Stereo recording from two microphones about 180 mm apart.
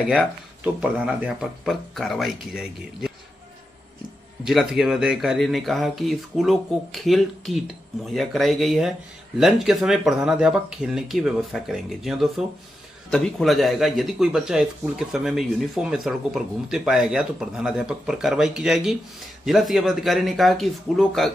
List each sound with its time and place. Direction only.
0.7 s speech: 5° right (ahead or behind)
4.5 s speech: 5° right (ahead or behind)